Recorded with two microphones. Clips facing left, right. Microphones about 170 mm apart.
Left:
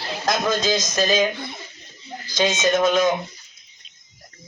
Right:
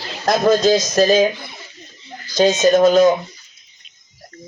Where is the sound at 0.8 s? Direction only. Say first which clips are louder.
Right 6 dB; 40° right (ahead or behind).